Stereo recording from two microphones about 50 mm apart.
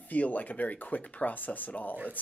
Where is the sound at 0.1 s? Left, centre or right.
Left.